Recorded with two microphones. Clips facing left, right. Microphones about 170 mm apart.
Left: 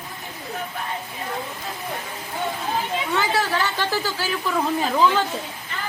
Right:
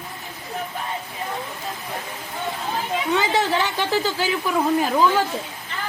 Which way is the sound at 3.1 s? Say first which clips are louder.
Right 3 dB; 20° right (ahead or behind).